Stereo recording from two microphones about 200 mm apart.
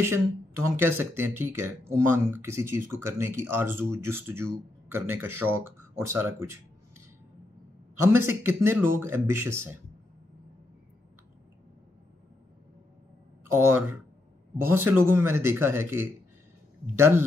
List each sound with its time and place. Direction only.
0.7 s speech: 10° right (ahead or behind)
8.0 s speech: 10° right (ahead or behind)
13.5 s speech: 10° right (ahead or behind)